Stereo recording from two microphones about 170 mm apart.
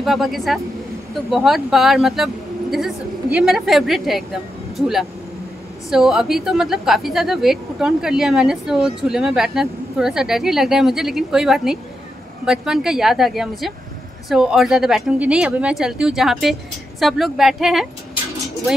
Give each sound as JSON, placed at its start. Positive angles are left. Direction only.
{"t": 0.0, "sound": "a woman's voice", "side_deg": 0}